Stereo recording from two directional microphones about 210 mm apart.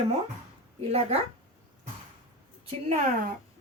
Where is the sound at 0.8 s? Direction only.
30° right (ahead or behind).